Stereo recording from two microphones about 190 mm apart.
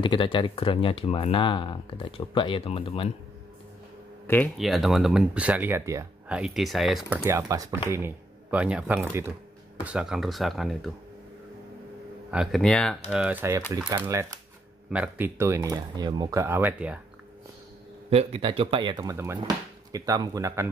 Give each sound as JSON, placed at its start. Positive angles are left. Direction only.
{"t": 0.0, "sound": "speech", "side_deg": 25}
{"t": 4.3, "sound": "speech", "side_deg": 5}
{"t": 6.3, "sound": "speech", "side_deg": 0}
{"t": 7.2, "sound": "speech", "side_deg": -15}
{"t": 12.3, "sound": "speech", "side_deg": 0}
{"t": 13.1, "sound": "speech", "side_deg": -5}
{"t": 18.1, "sound": "speech", "side_deg": -30}